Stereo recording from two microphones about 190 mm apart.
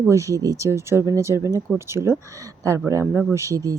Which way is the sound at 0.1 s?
15° right (ahead or behind).